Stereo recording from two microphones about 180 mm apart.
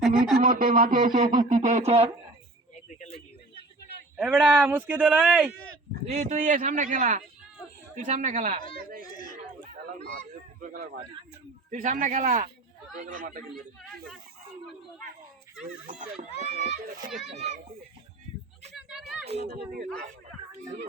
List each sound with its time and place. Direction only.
0.0 s speech: 5° right (ahead or behind)
0.4 s speech: 55° right (ahead or behind); by 2.1 s 35° right (ahead or behind)
3.0 s a sound: 35° left (ahead or behind)
4.2 s speech: 5° right (ahead or behind)
6.1 s speech: 40° right (ahead or behind)
9.9 s a sound: 45° right (ahead or behind)
11.7 s speech: 45° right (ahead or behind)
15.9 s speech: 40° right (ahead or behind)
18.7 s a sound: centre (ahead or behind)